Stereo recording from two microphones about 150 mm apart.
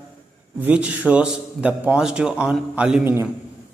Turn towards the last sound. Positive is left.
turn(degrees=-5)  # may be behind; listen again after turning